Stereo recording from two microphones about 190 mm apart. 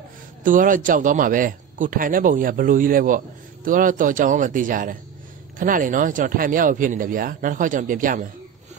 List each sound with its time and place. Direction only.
0.4 s a man's voice: 45° right (ahead or behind)